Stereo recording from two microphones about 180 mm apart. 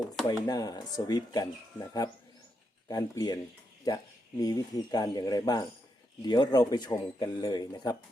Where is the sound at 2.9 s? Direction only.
25° left (ahead or behind).